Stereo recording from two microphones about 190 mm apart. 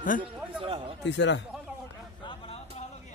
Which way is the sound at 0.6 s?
30° right (ahead or behind).